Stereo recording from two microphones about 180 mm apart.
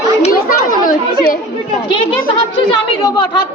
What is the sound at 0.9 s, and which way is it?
Chatter, 50° left (ahead or behind).